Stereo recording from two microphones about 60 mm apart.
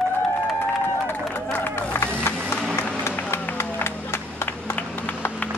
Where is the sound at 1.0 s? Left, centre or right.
Left.